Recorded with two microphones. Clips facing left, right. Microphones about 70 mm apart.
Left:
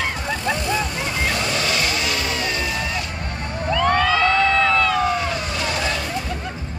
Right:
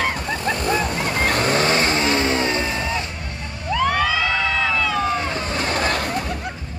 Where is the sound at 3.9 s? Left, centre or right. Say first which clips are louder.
Left 3 dB; centre.